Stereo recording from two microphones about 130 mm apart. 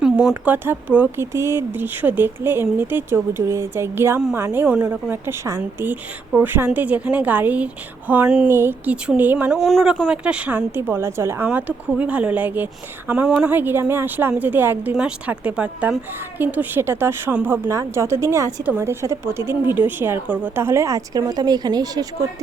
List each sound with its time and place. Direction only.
0.0 s speech: 5° right (ahead or behind)
9.6 s a woman's voice: centre (ahead or behind); by 22.0 s 30° right (ahead or behind)